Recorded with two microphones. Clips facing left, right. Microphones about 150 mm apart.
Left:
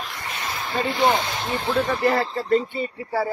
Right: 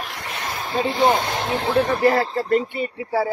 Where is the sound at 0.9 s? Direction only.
35° right (ahead or behind).